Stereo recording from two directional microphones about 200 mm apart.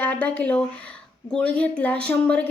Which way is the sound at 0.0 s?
10° left (ahead or behind).